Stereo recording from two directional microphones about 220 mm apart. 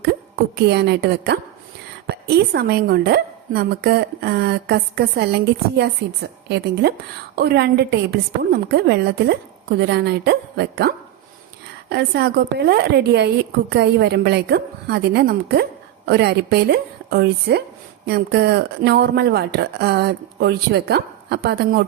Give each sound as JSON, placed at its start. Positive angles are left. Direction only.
{"t": 0.7, "sound": "speech", "side_deg": -50}
{"t": 7.3, "sound": "speech", "side_deg": -45}